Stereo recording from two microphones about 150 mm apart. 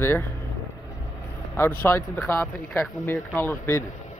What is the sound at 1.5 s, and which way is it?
Speech, 15° left (ahead or behind).